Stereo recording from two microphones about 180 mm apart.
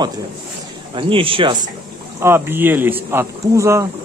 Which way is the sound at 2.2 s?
10° right (ahead or behind).